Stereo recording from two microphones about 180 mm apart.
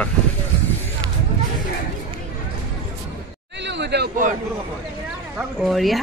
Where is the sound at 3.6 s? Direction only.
75° right (ahead or behind).